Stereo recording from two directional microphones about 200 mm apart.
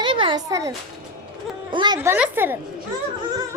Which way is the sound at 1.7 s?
20° right (ahead or behind).